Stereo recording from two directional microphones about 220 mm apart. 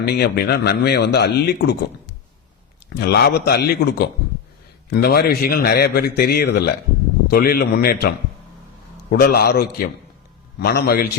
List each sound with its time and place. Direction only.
0.1 s speech: 45° left (ahead or behind)